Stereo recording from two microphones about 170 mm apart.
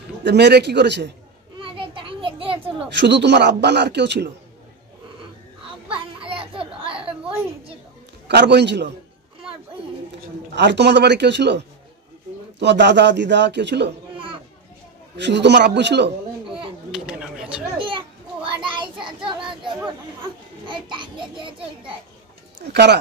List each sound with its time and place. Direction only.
0.2 s a man's voice: 80° right
1.6 s children playing: 30° right (ahead or behind)
3.0 s a man's voice: 90° right
5.9 s children playing: 30° right (ahead or behind)
7.2 s a sound: 15° right (ahead or behind)
8.3 s a man's voice: 80° right
10.5 s a man's voice: 90° right
15.1 s a man's voice: 90° right
16.9 s a sound: 5° right (ahead or behind)
17.7 s child singing: 30° right (ahead or behind)
20.9 s a sound: 30° right (ahead or behind)
22.6 s speech: 80° right